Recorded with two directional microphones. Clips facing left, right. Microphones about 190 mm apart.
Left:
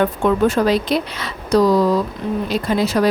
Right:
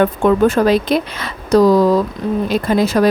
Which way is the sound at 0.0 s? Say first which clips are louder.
Right 3 dB; 50° right (ahead or behind).